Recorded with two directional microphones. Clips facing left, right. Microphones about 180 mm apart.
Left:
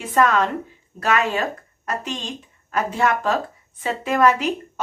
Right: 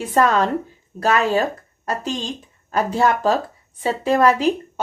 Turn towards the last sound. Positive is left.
turn(degrees=-30)  # may be behind; listen again after turning